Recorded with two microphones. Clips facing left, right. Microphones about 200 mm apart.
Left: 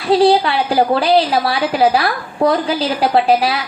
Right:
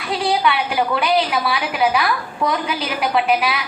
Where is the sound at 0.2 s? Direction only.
35° left (ahead or behind).